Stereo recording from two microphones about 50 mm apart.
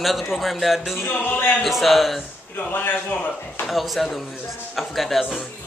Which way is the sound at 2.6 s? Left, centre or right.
Left.